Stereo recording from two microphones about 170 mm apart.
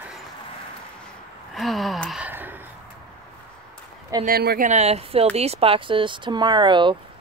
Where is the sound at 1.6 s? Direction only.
Centre (ahead or behind).